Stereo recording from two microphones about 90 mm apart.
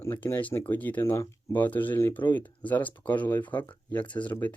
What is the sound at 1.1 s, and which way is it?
Speech, 35° left (ahead or behind).